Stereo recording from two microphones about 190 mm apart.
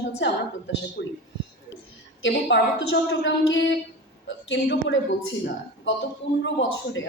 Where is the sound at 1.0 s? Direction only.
60° left (ahead or behind).